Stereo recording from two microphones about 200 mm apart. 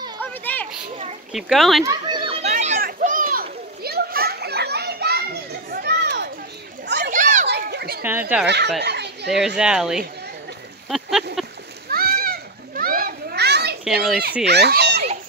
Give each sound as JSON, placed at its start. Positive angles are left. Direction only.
{"t": 0.2, "sound": "children playing", "side_deg": 10}
{"t": 1.3, "sound": "speech", "side_deg": 0}
{"t": 1.9, "sound": "a sound", "side_deg": -20}
{"t": 2.5, "sound": "children playing", "side_deg": -40}
{"t": 7.1, "sound": "children playing", "side_deg": -40}
{"t": 7.4, "sound": "children playing", "side_deg": -55}
{"t": 8.0, "sound": "a sound", "side_deg": -10}
{"t": 8.8, "sound": "children playing", "side_deg": -55}
{"t": 9.6, "sound": "speech", "side_deg": -5}
{"t": 10.9, "sound": "a sound", "side_deg": 0}
{"t": 11.9, "sound": "children playing", "side_deg": -50}
{"t": 13.8, "sound": "speech", "side_deg": 0}
{"t": 14.4, "sound": "speech", "side_deg": -55}